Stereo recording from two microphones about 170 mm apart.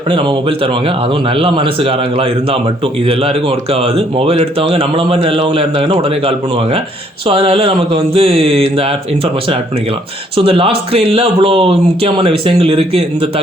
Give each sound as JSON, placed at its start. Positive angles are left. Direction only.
{"t": 0.1, "sound": "a man's voice", "side_deg": -30}